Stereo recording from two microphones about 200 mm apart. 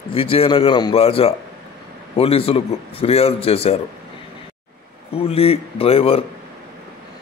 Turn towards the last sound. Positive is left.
turn(degrees=30)  # may be behind; listen again after turning